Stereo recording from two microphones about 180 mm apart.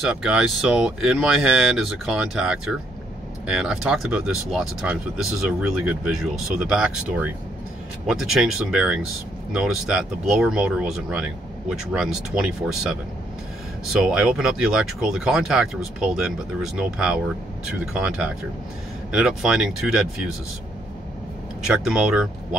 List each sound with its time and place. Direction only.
0.0 s speech: 5° right (ahead or behind)
13.9 s speech: 5° right (ahead or behind)
21.6 s speech: 5° right (ahead or behind)